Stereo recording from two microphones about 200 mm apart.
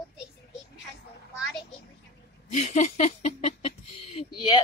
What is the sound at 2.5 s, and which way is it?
Speech, 35° left (ahead or behind).